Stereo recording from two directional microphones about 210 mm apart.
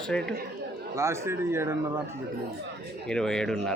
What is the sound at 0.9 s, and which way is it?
Speech, 15° right (ahead or behind).